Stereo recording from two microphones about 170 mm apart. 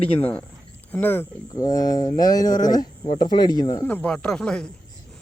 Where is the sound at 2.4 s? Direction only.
50° left (ahead or behind).